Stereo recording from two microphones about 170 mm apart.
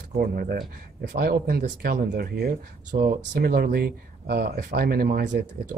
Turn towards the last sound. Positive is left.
turn(degrees=-60)  # may be behind; listen again after turning